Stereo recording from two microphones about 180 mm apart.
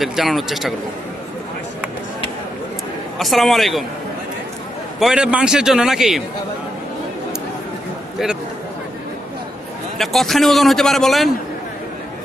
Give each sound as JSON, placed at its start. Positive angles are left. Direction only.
{"t": 0.0, "sound": "a man's voice", "side_deg": 0}
{"t": 3.2, "sound": "a man's voice", "side_deg": 0}
{"t": 4.9, "sound": "a man's voice", "side_deg": -5}
{"t": 10.0, "sound": "a man's voice", "side_deg": 0}